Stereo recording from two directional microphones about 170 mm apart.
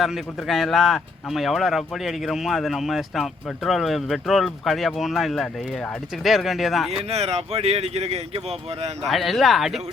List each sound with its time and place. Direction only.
0.0 s speech: centre (ahead or behind)
7.1 s speech: 40° right (ahead or behind)
9.0 s speech: centre (ahead or behind)